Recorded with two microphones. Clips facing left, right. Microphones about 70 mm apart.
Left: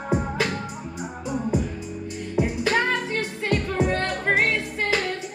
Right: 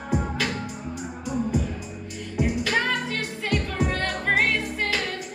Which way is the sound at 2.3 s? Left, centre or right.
Left.